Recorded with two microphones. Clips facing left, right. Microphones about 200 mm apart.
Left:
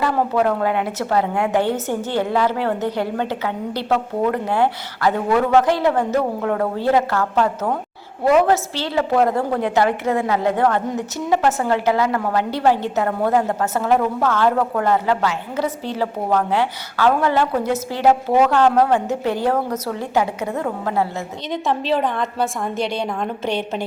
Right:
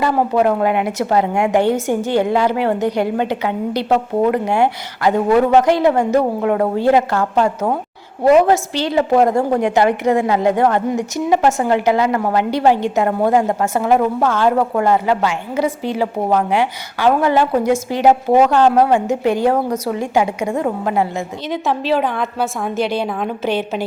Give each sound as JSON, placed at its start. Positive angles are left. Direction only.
{"t": 0.0, "sound": "a woman's voice", "side_deg": -15}
{"t": 21.5, "sound": "a woman's voice", "side_deg": 0}